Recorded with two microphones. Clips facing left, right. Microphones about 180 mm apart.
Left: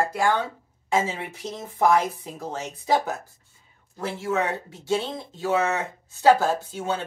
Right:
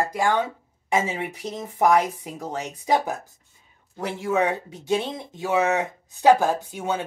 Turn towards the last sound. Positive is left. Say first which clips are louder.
# right 1 dB
turn(degrees=-15)  # may be behind; listen again after turning